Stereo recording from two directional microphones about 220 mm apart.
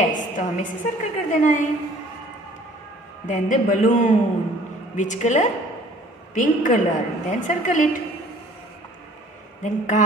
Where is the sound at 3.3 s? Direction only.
35° left (ahead or behind).